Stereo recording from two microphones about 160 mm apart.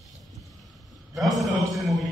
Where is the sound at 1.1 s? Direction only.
Centre (ahead or behind).